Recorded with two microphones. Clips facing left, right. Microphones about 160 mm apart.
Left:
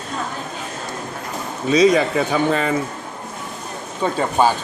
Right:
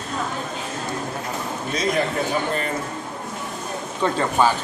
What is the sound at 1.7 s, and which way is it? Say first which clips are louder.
A man's voice: left 9 dB; 90° left.